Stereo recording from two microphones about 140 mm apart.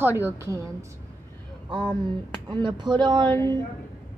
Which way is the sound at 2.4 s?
30° right (ahead or behind).